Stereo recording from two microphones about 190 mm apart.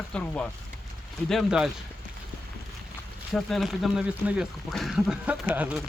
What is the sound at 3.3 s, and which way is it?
Speech, centre (ahead or behind).